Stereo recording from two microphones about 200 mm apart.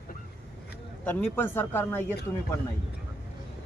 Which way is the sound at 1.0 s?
10° left (ahead or behind).